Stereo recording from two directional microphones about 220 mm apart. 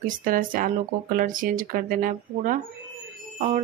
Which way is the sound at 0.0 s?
40° right (ahead or behind).